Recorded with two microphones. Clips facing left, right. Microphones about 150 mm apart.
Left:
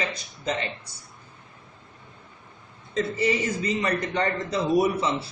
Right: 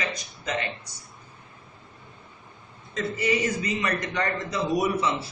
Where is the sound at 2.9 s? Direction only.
30° left (ahead or behind).